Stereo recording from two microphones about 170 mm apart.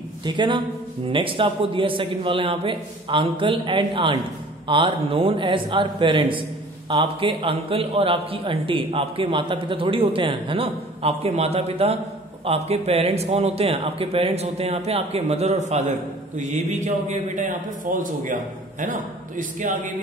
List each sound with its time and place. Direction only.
0.2 s a man's voice: 25° right (ahead or behind); by 19.9 s 50° right (ahead or behind)